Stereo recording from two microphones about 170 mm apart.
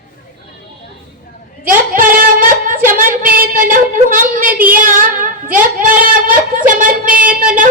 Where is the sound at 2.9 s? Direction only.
55° right (ahead or behind).